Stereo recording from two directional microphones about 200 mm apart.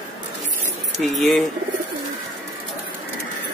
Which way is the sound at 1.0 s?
Centre (ahead or behind).